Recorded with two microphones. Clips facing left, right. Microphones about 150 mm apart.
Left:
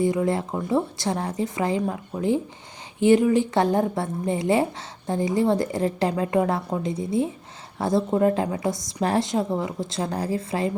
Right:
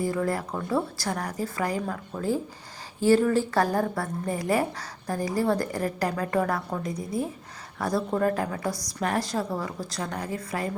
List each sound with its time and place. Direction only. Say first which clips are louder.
0.0 s a woman's voice: left 5 dB; 20° left (ahead or behind)